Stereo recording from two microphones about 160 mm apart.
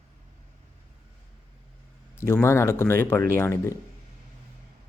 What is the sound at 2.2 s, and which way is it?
Speech, 15° left (ahead or behind).